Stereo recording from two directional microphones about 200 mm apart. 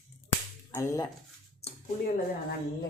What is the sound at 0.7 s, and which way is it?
Speech, 15° left (ahead or behind).